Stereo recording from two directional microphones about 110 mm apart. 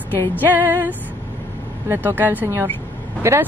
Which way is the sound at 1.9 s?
15° right (ahead or behind).